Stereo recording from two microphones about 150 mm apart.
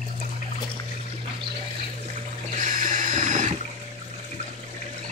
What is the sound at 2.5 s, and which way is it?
Water, 55° right (ahead or behind).